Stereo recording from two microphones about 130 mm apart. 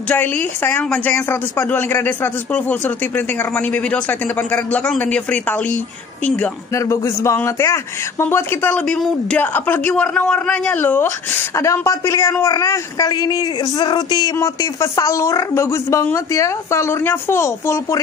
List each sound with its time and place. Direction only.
0.1 s speech: 15° left (ahead or behind)
6.7 s speech: 20° left (ahead or behind)
8.8 s a man's voice: 5° left (ahead or behind); by 18.0 s 20° left (ahead or behind)